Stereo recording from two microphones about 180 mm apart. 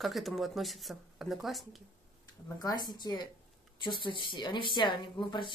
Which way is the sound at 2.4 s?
20° left (ahead or behind).